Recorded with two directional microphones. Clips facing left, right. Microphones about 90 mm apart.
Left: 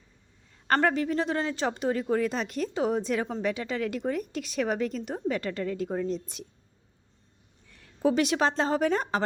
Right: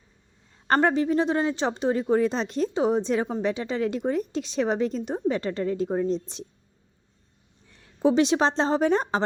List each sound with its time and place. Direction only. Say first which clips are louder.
0.7 s a woman's voice: right 3 dB; 25° right (ahead or behind)
7.7 s a woman's voice: right 3 dB; 25° right (ahead or behind)